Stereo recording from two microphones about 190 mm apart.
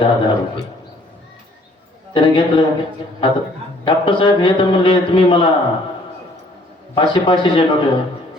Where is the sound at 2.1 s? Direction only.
25° left (ahead or behind).